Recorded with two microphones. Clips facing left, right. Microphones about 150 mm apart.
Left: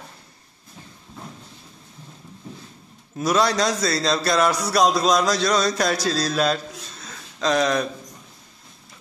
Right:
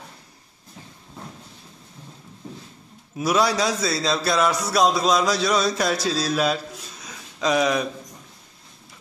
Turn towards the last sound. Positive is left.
turn(degrees=-10)  # may be behind; listen again after turning